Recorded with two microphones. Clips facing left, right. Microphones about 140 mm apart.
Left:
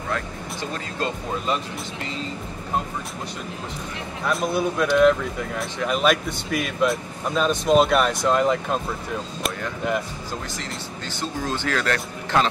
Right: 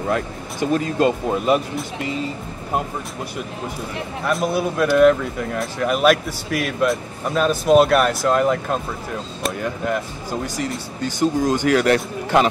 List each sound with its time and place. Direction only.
0.6 s speech: 15° right (ahead or behind)
4.3 s speech: centre (ahead or behind)
11.0 s speech: 10° right (ahead or behind)